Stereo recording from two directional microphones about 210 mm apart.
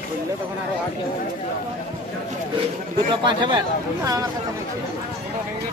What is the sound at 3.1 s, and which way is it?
Speech, 20° right (ahead or behind).